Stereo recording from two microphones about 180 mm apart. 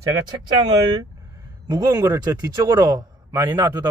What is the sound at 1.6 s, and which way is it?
A man's voice, 20° right (ahead or behind).